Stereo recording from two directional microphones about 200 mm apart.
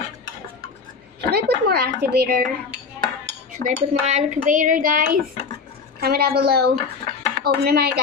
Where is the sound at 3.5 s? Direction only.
40° right (ahead or behind).